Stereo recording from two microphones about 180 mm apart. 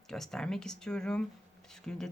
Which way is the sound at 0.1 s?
Centre (ahead or behind).